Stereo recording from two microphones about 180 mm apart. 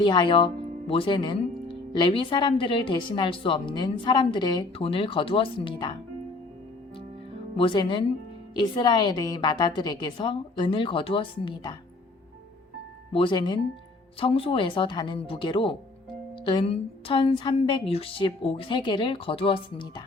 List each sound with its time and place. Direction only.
0.0 s speech: 25° left (ahead or behind)
7.5 s speech: 30° left (ahead or behind)
13.1 s speech: 25° left (ahead or behind)